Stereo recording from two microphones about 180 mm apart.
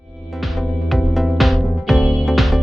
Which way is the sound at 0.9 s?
Centre (ahead or behind).